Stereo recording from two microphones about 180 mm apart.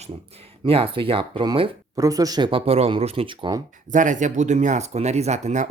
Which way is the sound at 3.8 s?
45° right (ahead or behind).